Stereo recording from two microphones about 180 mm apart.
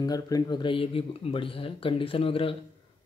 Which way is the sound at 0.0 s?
20° left (ahead or behind).